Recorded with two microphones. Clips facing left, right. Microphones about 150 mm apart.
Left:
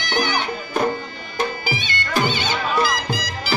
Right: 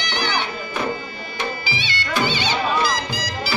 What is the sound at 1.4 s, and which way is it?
Bagpipes, 45° left (ahead or behind).